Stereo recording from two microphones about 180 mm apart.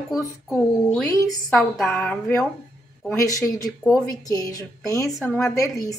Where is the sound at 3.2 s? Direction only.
20° left (ahead or behind).